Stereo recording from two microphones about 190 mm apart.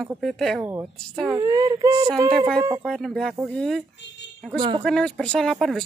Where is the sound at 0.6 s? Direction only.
15° right (ahead or behind).